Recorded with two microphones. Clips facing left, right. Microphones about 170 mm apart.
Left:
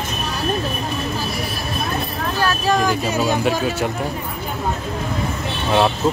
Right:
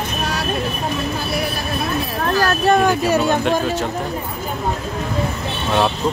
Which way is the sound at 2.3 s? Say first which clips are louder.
Right 3 dB; 60° right (ahead or behind).